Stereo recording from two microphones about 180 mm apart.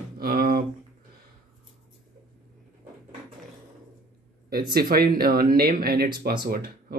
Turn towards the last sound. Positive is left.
turn(degrees=-55)  # may be behind; listen again after turning